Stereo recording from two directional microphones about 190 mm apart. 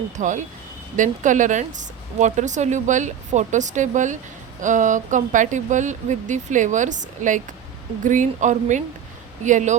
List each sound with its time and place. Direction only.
0.2 s speech: 40° right (ahead or behind)